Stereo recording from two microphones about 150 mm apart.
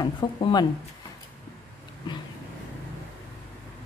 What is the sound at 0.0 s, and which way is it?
Speech, 30° left (ahead or behind).